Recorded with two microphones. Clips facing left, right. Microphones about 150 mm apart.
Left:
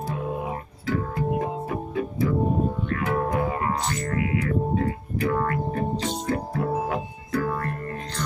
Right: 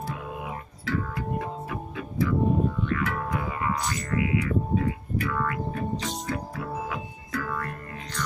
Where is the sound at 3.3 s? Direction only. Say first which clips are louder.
Left 4 dB; 45° left (ahead or behind); by 6.3 s 30° left (ahead or behind).